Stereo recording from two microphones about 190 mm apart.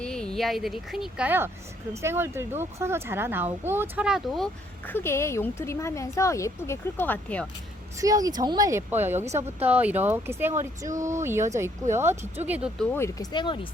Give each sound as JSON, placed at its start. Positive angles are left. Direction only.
{"t": 0.0, "sound": "speech", "side_deg": 5}
{"t": 4.9, "sound": "speech", "side_deg": 10}
{"t": 8.0, "sound": "speech", "side_deg": -20}
{"t": 12.8, "sound": "speech", "side_deg": 10}
{"t": 13.3, "sound": "speech", "side_deg": 25}